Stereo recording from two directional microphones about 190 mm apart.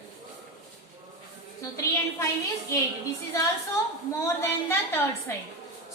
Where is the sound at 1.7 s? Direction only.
15° left (ahead or behind).